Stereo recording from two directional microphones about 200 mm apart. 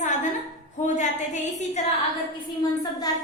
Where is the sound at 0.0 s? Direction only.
35° left (ahead or behind).